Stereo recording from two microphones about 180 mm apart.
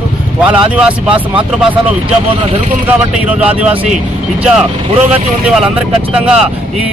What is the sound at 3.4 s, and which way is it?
Speech, 5° right (ahead or behind).